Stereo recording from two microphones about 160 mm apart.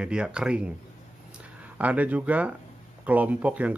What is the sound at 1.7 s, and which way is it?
Speech, 10° right (ahead or behind).